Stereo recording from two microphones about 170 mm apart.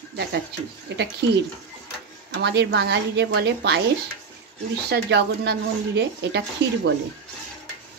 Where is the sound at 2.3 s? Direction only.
85° right.